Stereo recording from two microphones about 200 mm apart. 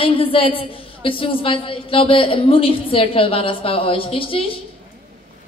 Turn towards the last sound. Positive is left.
turn(degrees=25)  # may be behind; listen again after turning